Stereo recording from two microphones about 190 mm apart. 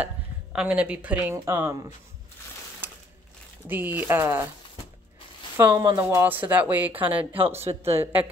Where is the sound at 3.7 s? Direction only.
10° right (ahead or behind).